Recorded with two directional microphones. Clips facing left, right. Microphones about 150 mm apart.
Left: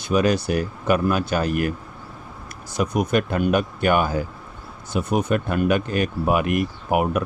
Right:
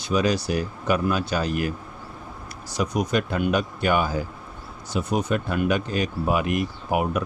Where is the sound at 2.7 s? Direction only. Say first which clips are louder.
Left 3 dB; 55° left (ahead or behind).